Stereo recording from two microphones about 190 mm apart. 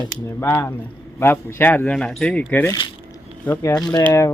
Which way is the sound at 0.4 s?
15° left (ahead or behind).